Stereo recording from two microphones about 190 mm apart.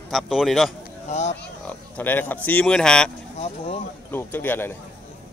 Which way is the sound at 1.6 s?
10° left (ahead or behind).